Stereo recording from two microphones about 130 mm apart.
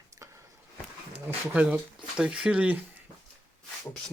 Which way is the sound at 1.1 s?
10° right (ahead or behind).